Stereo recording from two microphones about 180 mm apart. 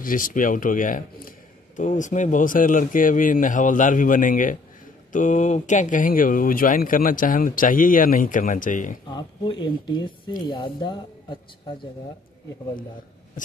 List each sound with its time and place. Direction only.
0.0 s speech: 50° left (ahead or behind)
9.1 s speech: 25° left (ahead or behind)